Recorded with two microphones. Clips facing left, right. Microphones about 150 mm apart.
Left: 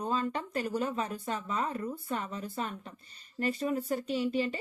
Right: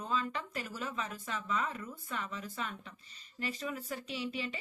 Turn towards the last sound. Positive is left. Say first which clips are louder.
# left 8 dB
turn(degrees=35)  # may be behind; listen again after turning